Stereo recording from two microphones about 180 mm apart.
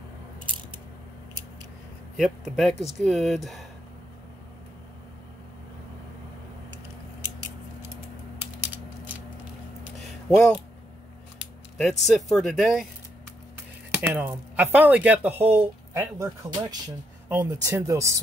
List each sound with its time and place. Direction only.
2.1 s speech: centre (ahead or behind)
7.8 s mechanisms: 15° right (ahead or behind)
9.9 s a sound: 5° left (ahead or behind)
11.8 s speech: centre (ahead or behind)
13.9 s speech: 10° right (ahead or behind)
17.3 s speech: 15° right (ahead or behind)